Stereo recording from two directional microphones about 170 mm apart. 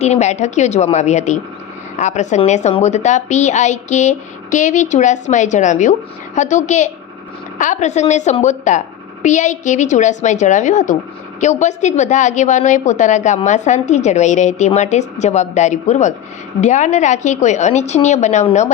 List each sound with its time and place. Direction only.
0.0 s a woman's voice: 40° left (ahead or behind)